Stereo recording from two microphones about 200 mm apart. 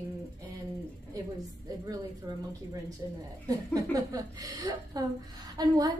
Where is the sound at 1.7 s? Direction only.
20° right (ahead or behind).